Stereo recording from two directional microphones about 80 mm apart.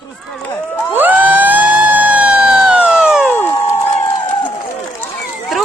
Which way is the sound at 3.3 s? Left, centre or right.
Left.